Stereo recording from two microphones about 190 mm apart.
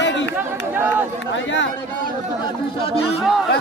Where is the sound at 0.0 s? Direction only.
70° left (ahead or behind).